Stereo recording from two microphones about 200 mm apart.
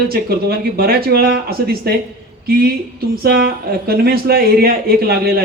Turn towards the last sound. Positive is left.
turn(degrees=-50)  # may be behind; listen again after turning